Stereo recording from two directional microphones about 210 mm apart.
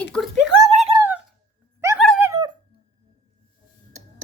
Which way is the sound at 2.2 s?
15° right (ahead or behind).